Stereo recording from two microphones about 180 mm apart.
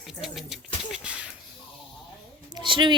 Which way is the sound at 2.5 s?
25° right (ahead or behind).